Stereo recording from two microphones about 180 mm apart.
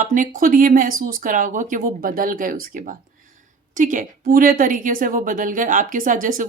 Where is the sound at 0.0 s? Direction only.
45° right (ahead or behind).